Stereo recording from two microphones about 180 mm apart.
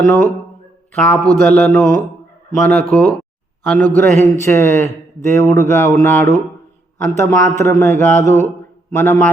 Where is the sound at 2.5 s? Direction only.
5° left (ahead or behind).